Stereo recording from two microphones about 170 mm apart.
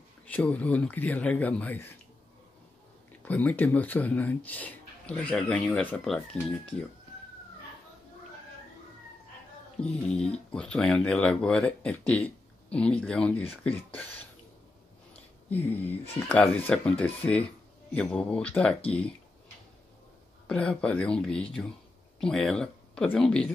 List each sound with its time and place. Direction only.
0.3 s speech: 10° left (ahead or behind)
3.3 s speech: 10° left (ahead or behind)
10.1 s speech: 5° left (ahead or behind)
20.4 s speech: 5° left (ahead or behind)